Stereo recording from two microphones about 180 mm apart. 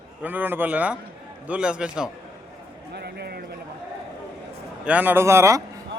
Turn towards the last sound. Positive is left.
turn(degrees=-15)  # may be behind; listen again after turning